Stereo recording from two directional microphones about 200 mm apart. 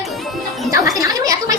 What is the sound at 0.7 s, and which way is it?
Speech, 15° right (ahead or behind).